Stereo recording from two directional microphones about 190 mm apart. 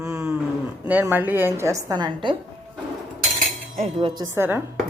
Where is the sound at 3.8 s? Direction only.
30° right (ahead or behind).